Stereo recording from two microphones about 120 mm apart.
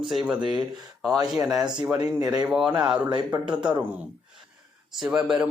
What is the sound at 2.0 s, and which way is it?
Speech, 30° right (ahead or behind).